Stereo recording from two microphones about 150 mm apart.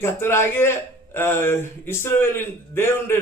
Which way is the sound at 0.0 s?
15° left (ahead or behind).